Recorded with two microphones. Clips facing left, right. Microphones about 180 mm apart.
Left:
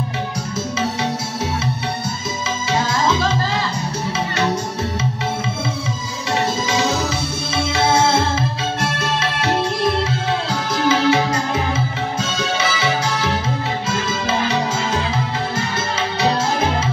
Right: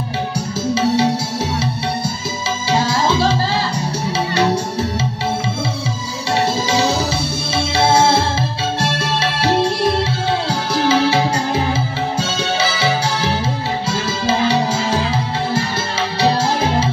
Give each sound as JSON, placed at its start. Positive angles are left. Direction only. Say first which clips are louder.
{"t": 2.7, "sound": "music", "louder": "right 2 dB", "side_deg": -30}
{"t": 6.7, "sound": "music", "louder": "right 2 dB", "side_deg": -30}